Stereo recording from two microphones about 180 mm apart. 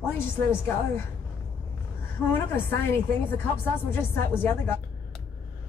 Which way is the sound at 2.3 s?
10° left (ahead or behind).